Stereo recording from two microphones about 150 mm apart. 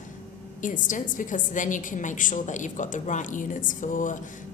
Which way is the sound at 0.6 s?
60° left (ahead or behind).